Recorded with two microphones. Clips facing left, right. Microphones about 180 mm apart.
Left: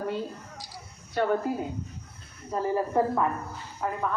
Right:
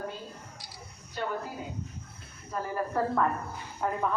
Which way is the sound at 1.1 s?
60° left (ahead or behind).